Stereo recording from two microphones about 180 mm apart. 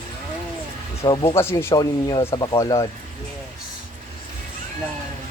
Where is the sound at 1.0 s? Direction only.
30° left (ahead or behind).